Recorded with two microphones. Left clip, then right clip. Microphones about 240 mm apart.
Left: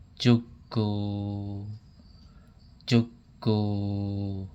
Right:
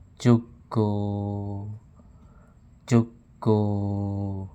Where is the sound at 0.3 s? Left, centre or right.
Centre.